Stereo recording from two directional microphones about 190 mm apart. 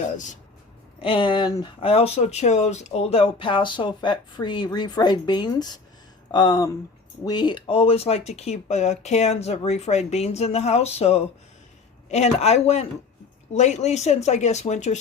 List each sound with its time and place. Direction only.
1.0 s speech: 25° left (ahead or behind)